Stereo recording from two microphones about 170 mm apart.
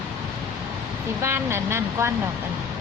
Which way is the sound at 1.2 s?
15° right (ahead or behind).